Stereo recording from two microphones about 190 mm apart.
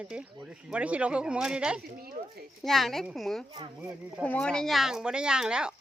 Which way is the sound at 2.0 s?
55° right (ahead or behind).